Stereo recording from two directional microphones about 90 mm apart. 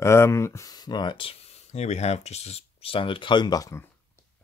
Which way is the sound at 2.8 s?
85° left.